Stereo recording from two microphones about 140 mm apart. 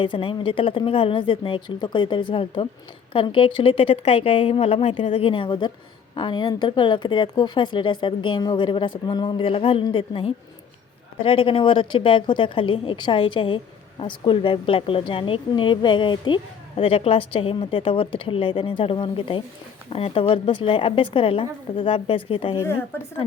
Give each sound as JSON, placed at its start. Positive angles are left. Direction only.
{"t": 0.0, "sound": "a woman's voice", "side_deg": 40}
{"t": 22.5, "sound": "speech", "side_deg": 15}